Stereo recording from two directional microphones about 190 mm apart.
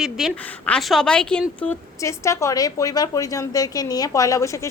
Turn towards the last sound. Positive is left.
turn(degrees=15)  # may be behind; listen again after turning